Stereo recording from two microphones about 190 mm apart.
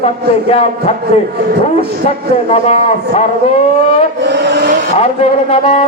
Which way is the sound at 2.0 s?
35° left (ahead or behind).